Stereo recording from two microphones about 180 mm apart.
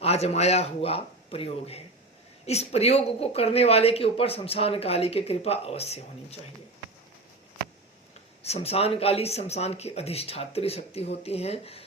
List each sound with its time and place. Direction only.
0.0 s speech: 35° left (ahead or behind)
8.4 s speech: 35° left (ahead or behind)